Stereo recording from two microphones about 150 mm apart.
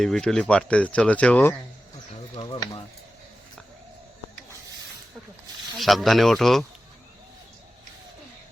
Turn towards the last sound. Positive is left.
turn(degrees=0)  # may be behind; listen again after turning